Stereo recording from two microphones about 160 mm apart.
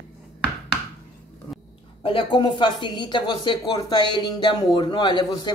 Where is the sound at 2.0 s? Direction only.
35° left (ahead or behind).